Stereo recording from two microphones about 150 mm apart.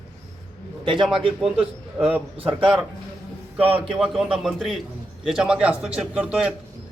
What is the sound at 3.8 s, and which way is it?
A man's voice, 5° right (ahead or behind).